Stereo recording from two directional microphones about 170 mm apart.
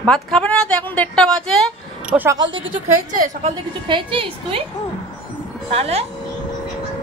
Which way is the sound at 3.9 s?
30° right (ahead or behind).